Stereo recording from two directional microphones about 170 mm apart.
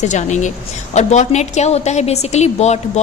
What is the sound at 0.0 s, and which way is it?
A woman's voice, 45° left (ahead or behind).